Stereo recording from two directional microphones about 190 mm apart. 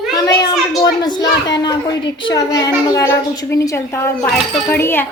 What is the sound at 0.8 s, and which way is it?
A child's voice, 20° left (ahead or behind).